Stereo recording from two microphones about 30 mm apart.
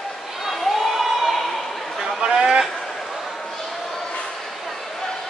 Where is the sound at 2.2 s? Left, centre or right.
Centre.